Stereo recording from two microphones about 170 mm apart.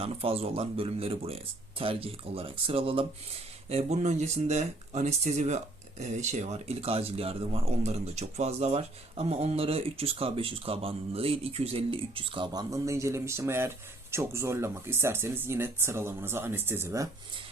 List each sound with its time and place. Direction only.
0.0 s speech: 35° right (ahead or behind); by 17.1 s 15° right (ahead or behind)